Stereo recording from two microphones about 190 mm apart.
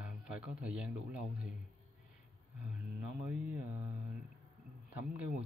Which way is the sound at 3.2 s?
5° right (ahead or behind).